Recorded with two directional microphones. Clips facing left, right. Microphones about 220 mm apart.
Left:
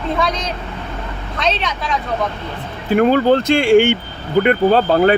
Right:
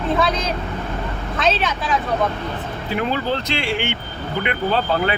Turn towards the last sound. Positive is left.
turn(degrees=45)  # may be behind; listen again after turning